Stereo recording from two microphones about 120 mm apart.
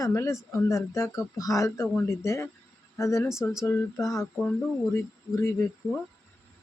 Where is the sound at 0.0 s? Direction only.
25° left (ahead or behind).